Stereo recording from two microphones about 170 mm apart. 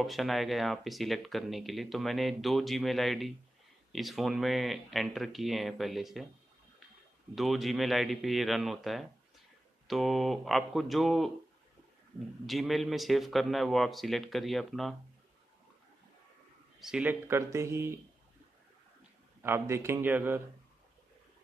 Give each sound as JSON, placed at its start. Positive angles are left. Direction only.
{"t": 0.0, "sound": "speech", "side_deg": 0}
{"t": 7.3, "sound": "speech", "side_deg": 0}
{"t": 12.4, "sound": "speech", "side_deg": 0}
{"t": 16.8, "sound": "speech", "side_deg": -5}
{"t": 19.4, "sound": "speech", "side_deg": -15}